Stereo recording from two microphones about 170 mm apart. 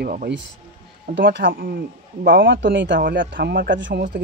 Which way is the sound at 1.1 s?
90° right.